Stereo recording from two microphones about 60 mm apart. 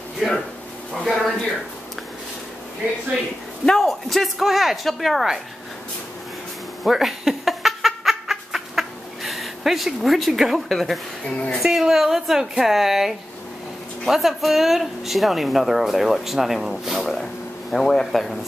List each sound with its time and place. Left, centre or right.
0.2 s speech: centre
3.6 s speech: centre
6.8 s a sound: centre
11.2 s speech: centre
11.6 s speech: centre